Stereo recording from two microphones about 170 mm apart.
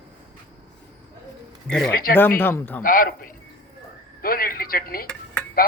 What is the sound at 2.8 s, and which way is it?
Speech, 55° left (ahead or behind).